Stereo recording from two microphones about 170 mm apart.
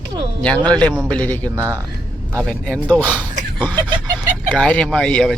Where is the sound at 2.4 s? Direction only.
5° left (ahead or behind).